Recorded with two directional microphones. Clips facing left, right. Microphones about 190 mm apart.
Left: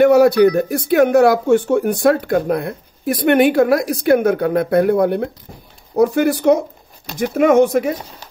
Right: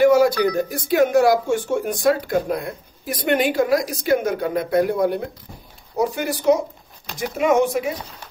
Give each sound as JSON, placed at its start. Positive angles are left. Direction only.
{"t": 0.0, "sound": "speech", "side_deg": 60}